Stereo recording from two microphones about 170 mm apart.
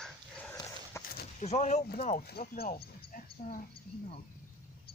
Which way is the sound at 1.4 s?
40° left (ahead or behind).